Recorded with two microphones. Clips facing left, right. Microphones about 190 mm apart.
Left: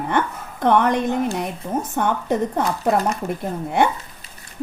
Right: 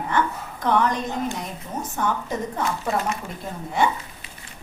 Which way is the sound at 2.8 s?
40° left (ahead or behind).